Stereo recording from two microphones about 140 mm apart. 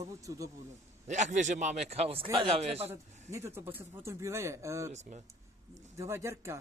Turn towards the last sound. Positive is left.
turn(degrees=-20)  # may be behind; listen again after turning